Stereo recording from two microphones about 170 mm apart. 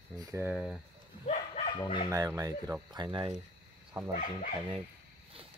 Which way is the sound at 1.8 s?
30° left (ahead or behind).